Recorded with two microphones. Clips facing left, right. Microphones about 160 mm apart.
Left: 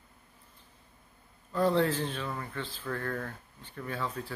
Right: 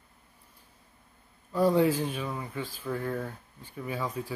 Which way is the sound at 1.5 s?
10° right (ahead or behind).